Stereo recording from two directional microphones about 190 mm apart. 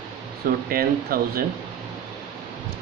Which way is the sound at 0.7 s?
50° right (ahead or behind).